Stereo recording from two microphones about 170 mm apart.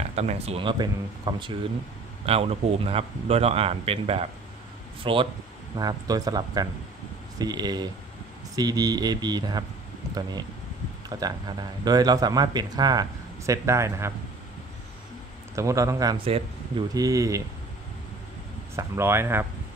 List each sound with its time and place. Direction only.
0.1 s speech: 40° right (ahead or behind); by 9.7 s 25° right (ahead or behind)
11.1 s a man's voice: 25° right (ahead or behind)
15.5 s speech: 20° right (ahead or behind)
16.3 s speech: 35° right (ahead or behind)
16.9 s speech: 20° right (ahead or behind)
18.8 s a man's voice: 15° right (ahead or behind)